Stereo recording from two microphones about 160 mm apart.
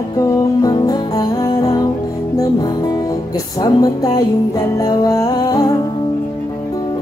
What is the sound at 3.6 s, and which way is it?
Music, 25° left (ahead or behind).